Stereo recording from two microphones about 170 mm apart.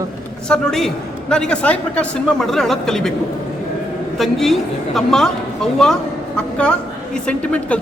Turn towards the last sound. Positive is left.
turn(degrees=5)  # may be behind; listen again after turning